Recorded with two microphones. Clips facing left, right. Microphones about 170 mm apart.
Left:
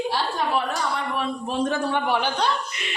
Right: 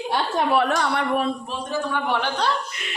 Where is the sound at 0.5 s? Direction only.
65° right (ahead or behind).